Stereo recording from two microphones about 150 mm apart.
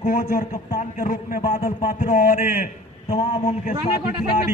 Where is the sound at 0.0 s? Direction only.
65° left (ahead or behind).